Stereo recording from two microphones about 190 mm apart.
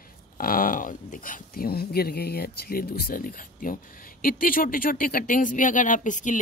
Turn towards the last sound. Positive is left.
turn(degrees=40)  # may be behind; listen again after turning